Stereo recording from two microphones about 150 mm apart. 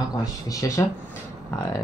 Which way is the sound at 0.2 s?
25° left (ahead or behind).